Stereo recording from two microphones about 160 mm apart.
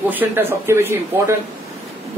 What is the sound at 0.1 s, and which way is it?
A man's voice, 10° right (ahead or behind).